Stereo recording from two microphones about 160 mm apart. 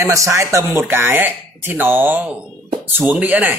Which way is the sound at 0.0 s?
20° right (ahead or behind).